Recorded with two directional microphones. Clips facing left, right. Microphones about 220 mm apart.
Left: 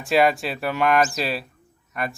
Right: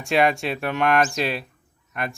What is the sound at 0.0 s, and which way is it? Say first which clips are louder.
Speech: left 1 dB; centre (ahead or behind).